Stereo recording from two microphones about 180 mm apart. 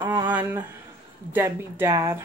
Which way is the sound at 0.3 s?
10° right (ahead or behind).